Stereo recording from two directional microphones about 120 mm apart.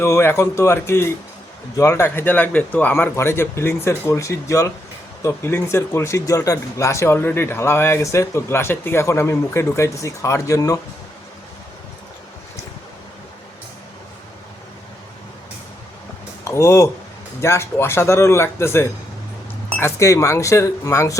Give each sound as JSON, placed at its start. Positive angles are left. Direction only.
{"t": 0.0, "sound": "speech", "side_deg": 20}
{"t": 16.4, "sound": "speech", "side_deg": 25}